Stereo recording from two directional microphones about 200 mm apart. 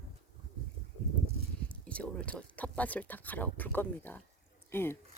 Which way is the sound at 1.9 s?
5° left (ahead or behind).